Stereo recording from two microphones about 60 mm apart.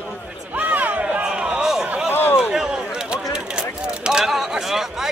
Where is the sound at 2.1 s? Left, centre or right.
Left.